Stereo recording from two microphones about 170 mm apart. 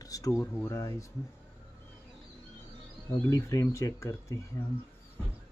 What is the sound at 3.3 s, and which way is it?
Speech, 20° left (ahead or behind).